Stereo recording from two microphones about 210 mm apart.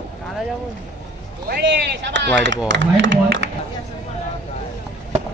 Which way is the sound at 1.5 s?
55° right (ahead or behind).